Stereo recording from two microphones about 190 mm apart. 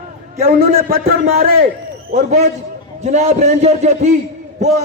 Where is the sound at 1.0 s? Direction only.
50° right (ahead or behind).